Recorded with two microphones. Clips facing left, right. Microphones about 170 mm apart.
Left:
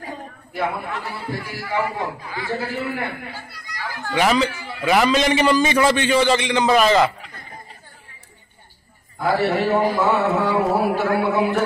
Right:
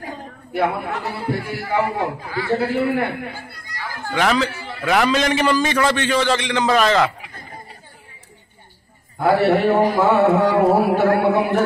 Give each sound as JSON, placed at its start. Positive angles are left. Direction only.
{"t": 0.5, "sound": "speech", "side_deg": -65}
{"t": 4.1, "sound": "a man's voice", "side_deg": 5}
{"t": 9.2, "sound": "speech", "side_deg": -55}